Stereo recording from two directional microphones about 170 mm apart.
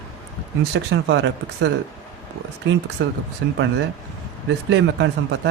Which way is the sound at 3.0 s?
90° right.